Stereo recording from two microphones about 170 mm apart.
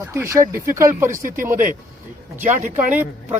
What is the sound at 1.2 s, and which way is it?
Speech, 55° right (ahead or behind).